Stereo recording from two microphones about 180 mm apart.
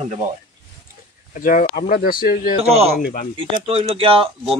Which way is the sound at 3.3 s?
30° right (ahead or behind).